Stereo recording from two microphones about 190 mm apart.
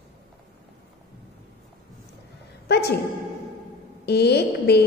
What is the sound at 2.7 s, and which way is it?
Speech, 60° left (ahead or behind).